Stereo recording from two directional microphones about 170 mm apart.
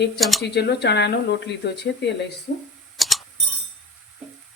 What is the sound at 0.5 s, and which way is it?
Speech, 80° left.